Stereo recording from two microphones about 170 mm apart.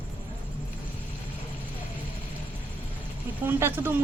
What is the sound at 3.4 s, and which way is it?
Speech, 15° right (ahead or behind).